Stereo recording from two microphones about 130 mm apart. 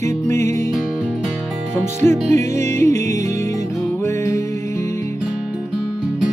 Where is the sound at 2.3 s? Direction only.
20° left (ahead or behind).